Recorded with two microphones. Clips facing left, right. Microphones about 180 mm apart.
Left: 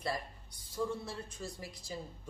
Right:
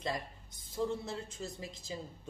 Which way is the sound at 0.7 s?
20° right (ahead or behind).